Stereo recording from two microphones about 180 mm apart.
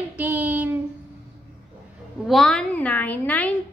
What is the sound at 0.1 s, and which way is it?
Child singing, 10° right (ahead or behind).